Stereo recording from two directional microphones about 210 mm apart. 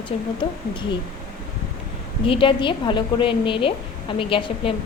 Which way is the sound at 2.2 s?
25° left (ahead or behind).